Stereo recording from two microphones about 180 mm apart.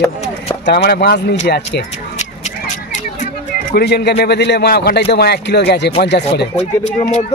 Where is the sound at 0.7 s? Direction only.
60° left (ahead or behind).